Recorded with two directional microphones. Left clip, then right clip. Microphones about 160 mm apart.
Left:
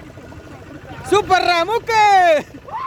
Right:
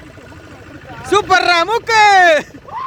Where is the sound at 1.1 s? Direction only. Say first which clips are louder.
Right 3 dB; 10° left (ahead or behind).